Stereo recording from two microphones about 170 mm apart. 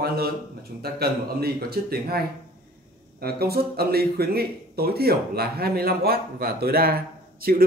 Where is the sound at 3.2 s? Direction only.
65° right (ahead or behind).